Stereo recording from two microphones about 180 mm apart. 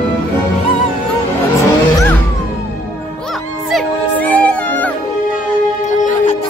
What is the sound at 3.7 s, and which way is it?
Music, 5° left (ahead or behind).